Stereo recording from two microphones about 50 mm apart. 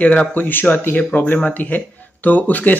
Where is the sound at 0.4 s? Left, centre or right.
Left.